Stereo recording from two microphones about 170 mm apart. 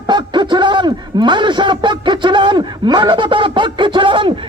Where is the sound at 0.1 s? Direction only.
25° right (ahead or behind).